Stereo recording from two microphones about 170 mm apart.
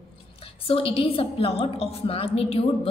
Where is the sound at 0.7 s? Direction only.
30° left (ahead or behind).